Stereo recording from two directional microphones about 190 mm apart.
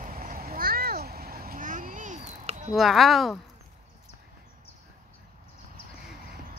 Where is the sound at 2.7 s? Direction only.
Centre (ahead or behind).